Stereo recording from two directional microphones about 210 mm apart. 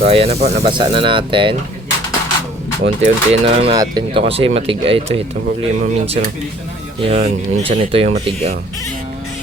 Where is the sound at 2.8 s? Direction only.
35° right (ahead or behind).